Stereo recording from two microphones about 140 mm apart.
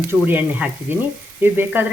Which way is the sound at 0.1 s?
15° right (ahead or behind).